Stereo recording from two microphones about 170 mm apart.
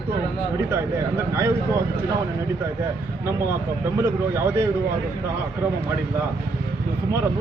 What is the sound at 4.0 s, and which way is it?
Speech, 15° right (ahead or behind).